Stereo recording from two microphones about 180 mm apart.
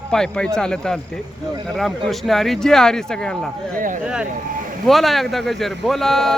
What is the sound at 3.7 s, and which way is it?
Speech, 50° right (ahead or behind).